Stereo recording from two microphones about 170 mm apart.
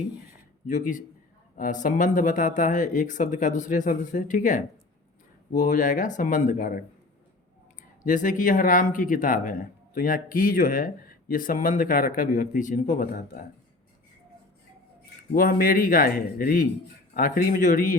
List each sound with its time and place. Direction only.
0.7 s speech: 50° left (ahead or behind)
8.0 s speech: 50° left (ahead or behind)
15.3 s speech: 55° left (ahead or behind)